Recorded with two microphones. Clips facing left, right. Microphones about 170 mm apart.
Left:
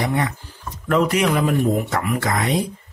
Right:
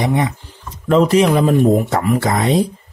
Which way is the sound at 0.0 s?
20° right (ahead or behind).